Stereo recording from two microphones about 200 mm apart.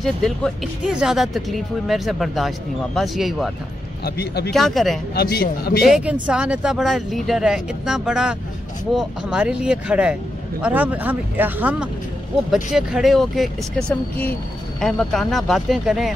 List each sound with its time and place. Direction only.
0.0 s speech: centre (ahead or behind)
4.0 s speech: 55° left (ahead or behind)
4.5 s speech: centre (ahead or behind)
5.1 s speech: 50° left (ahead or behind)
5.9 s speech: 5° right (ahead or behind)